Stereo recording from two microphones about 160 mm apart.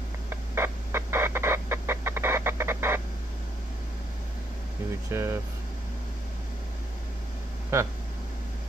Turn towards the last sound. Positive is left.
turn(degrees=-20)  # may be behind; listen again after turning